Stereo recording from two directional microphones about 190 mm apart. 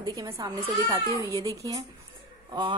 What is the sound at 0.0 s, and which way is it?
A woman's voice, 20° right (ahead or behind).